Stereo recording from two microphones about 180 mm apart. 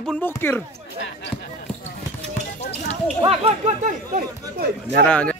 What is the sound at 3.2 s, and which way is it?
Speech, 30° right (ahead or behind).